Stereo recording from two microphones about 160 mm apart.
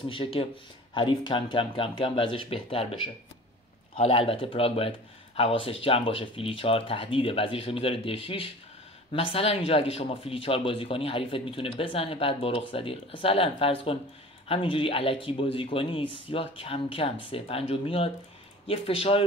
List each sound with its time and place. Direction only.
0.1 s speech: 35° left (ahead or behind)